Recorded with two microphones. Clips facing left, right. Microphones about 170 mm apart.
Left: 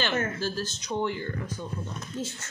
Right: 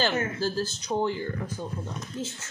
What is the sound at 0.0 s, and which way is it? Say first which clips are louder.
Speech: right 2 dB; 35° right (ahead or behind).